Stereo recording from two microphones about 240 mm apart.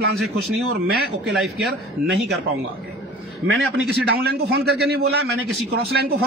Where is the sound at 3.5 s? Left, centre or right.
Right.